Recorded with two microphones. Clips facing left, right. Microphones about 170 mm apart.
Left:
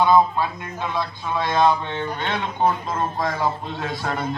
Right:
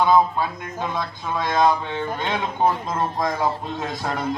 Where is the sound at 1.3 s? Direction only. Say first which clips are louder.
Even; 10° right (ahead or behind).